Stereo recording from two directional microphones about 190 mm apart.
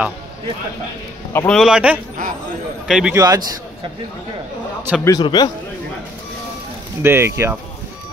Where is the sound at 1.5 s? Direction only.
Centre (ahead or behind).